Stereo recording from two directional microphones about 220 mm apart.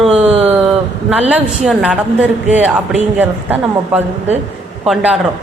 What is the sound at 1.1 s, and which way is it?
A woman's voice, 5° right (ahead or behind).